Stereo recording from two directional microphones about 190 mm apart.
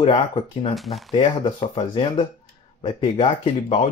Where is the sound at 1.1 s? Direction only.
30° left (ahead or behind).